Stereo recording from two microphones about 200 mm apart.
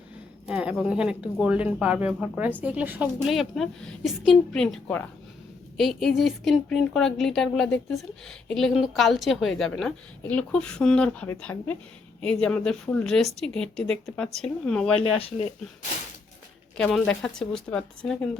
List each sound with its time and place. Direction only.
0.4 s a woman's voice: 5° right (ahead or behind)
14.9 s speech: 30° left (ahead or behind)
16.7 s a woman's voice: 5° left (ahead or behind)